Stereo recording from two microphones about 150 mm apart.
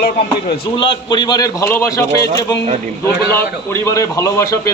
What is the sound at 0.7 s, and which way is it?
Speech, 35° left (ahead or behind).